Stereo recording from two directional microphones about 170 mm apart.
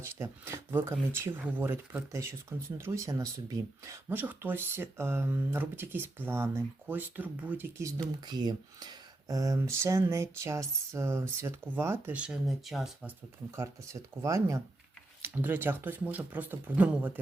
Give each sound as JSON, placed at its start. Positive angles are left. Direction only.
{"t": 0.0, "sound": "speech", "side_deg": -15}
{"t": 13.6, "sound": "speech", "side_deg": -15}